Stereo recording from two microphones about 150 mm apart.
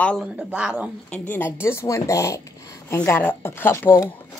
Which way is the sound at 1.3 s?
15° left (ahead or behind).